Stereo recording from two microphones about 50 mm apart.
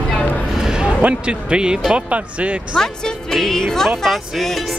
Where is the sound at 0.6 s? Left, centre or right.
Centre.